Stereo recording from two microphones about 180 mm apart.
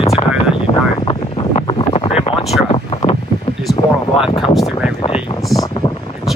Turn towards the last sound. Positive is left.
turn(degrees=0)  # may be behind; listen again after turning